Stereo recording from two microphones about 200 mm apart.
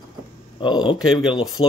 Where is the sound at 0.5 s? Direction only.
25° left (ahead or behind).